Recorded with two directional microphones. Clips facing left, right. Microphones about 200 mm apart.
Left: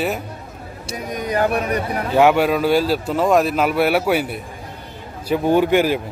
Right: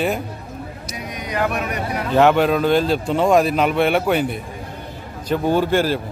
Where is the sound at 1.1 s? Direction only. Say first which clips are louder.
Left 4 dB; 45° left (ahead or behind).